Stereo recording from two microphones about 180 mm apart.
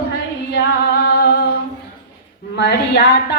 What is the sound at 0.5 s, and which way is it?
Singing, 60° left (ahead or behind).